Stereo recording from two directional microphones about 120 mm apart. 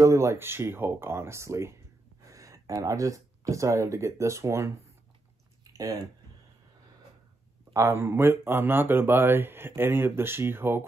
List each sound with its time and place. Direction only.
0.0 s speech: 25° right (ahead or behind)
5.6 s a sound: 30° right (ahead or behind)
7.7 s speech: 20° right (ahead or behind)